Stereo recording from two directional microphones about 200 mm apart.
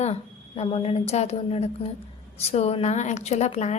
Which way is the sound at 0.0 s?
30° left (ahead or behind).